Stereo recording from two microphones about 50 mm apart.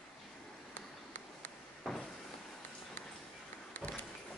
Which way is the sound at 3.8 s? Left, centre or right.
Left.